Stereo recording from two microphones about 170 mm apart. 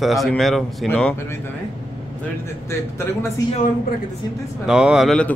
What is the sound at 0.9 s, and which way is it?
Speech, 10° left (ahead or behind).